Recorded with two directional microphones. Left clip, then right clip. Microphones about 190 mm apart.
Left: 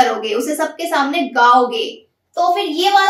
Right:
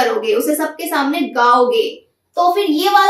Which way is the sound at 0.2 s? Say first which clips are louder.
Right 2 dB; 15° left (ahead or behind).